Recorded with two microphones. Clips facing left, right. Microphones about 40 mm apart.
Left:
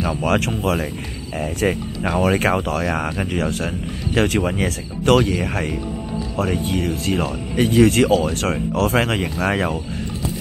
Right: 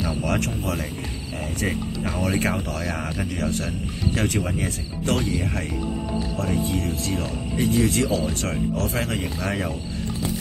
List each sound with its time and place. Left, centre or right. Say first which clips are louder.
0.2 s speech: left 6 dB; left
4.6 s speech: left 8 dB; left